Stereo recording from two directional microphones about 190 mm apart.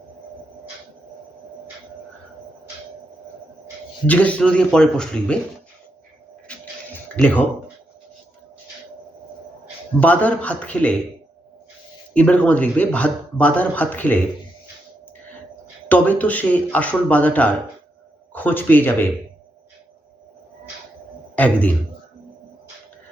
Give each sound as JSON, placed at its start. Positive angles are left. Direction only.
{"t": 4.0, "sound": "speech", "side_deg": 10}
{"t": 6.5, "sound": "music", "side_deg": 5}
{"t": 7.2, "sound": "speech", "side_deg": 10}
{"t": 10.0, "sound": "speech", "side_deg": 10}
{"t": 12.1, "sound": "speech", "side_deg": 5}
{"t": 15.9, "sound": "speech", "side_deg": 10}
{"t": 21.3, "sound": "a man's voice", "side_deg": 10}